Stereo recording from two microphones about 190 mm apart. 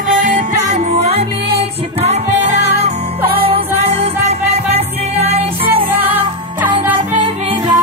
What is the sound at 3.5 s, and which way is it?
Music, 30° right (ahead or behind).